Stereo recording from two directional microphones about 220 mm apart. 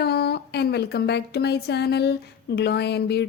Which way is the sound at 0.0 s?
45° left (ahead or behind).